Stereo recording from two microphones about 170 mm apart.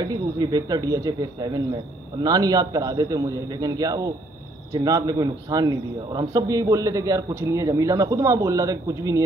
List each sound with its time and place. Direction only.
0.0 s a man's voice: 25° right (ahead or behind)